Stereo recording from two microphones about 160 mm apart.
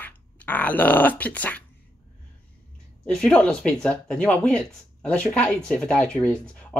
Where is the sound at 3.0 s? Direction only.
5° left (ahead or behind).